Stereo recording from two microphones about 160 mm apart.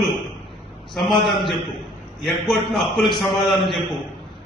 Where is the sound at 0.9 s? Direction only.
Centre (ahead or behind).